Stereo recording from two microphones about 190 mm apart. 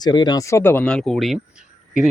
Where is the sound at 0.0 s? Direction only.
20° left (ahead or behind).